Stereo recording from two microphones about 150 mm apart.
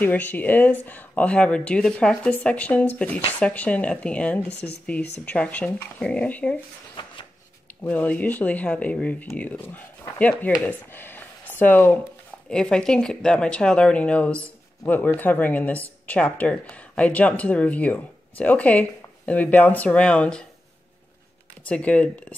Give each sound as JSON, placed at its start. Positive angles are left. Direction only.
{"t": 0.0, "sound": "speech", "side_deg": 10}
{"t": 7.0, "sound": "a sound", "side_deg": 35}
{"t": 7.8, "sound": "speech", "side_deg": 10}
{"t": 21.6, "sound": "speech", "side_deg": 10}